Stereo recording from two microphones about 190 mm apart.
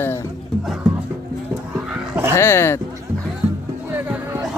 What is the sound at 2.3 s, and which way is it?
Speech, 15° left (ahead or behind).